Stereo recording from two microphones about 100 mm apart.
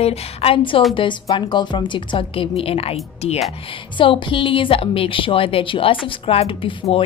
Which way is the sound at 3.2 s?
90° left.